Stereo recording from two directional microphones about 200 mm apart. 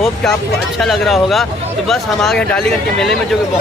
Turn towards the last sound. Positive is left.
turn(degrees=5)  # may be behind; listen again after turning